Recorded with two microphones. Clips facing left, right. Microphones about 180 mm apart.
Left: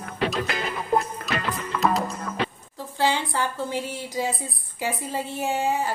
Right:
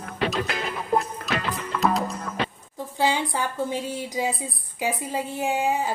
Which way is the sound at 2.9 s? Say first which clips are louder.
Even; 15° right (ahead or behind).